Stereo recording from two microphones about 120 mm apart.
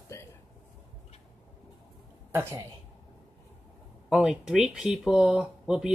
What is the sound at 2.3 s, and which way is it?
Speech, 20° right (ahead or behind).